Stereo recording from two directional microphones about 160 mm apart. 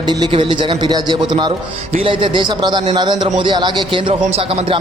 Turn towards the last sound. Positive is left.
turn(degrees=-35)  # may be behind; listen again after turning